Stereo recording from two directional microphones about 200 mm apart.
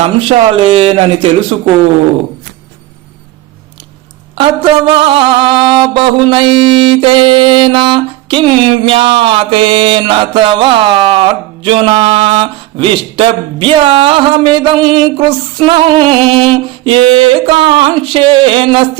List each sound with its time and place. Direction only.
0.0 s mantra: 35° right (ahead or behind)
4.4 s mantra: 25° right (ahead or behind)
16.2 s a sound: 5° left (ahead or behind)
16.8 s mantra: 25° right (ahead or behind)